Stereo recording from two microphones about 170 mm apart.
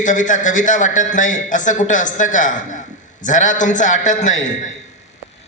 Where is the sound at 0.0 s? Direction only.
50° left (ahead or behind).